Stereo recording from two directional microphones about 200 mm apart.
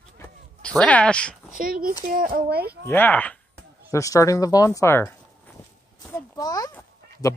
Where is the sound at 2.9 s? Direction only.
10° left (ahead or behind).